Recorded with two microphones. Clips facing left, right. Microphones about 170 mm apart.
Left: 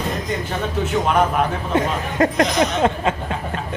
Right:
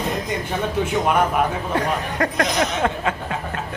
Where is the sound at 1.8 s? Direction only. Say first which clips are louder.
Left 4 dB; 20° left (ahead or behind).